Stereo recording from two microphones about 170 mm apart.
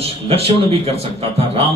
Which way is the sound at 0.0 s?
35° right (ahead or behind).